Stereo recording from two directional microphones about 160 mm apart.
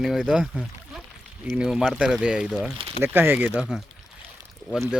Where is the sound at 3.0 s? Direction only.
15° right (ahead or behind).